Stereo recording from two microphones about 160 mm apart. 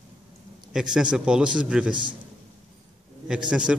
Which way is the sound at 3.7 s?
5° right (ahead or behind).